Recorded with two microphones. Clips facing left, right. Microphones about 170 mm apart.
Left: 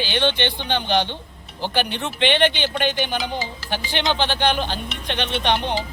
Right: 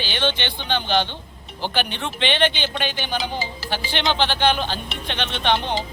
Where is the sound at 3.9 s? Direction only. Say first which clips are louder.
Even; 15° left (ahead or behind).